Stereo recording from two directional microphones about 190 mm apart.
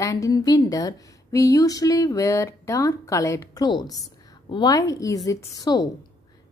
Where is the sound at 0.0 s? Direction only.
20° left (ahead or behind).